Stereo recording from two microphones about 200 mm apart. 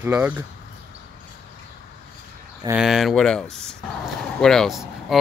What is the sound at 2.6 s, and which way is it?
Speech, 5° right (ahead or behind).